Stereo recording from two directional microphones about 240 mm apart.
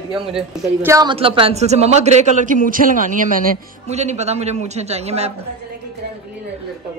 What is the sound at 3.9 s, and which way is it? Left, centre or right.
A man's voice, right.